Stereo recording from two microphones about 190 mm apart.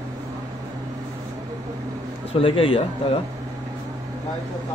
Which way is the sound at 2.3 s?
30° left (ahead or behind).